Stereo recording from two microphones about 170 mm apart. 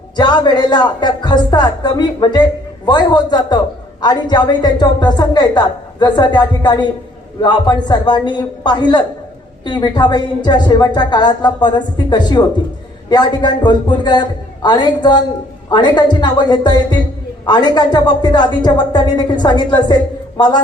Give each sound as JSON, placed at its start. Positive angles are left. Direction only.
{"t": 0.2, "sound": "a woman's voice", "side_deg": 25}